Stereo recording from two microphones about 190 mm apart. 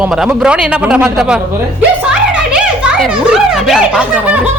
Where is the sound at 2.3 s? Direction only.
5° right (ahead or behind).